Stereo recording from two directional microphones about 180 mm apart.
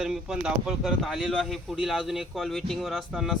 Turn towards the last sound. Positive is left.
turn(degrees=0)  # may be behind; listen again after turning